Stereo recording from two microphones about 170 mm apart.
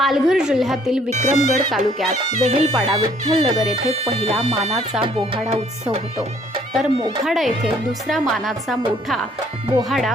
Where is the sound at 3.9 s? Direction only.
35° right (ahead or behind).